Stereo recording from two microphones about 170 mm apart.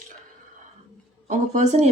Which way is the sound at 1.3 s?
45° right (ahead or behind).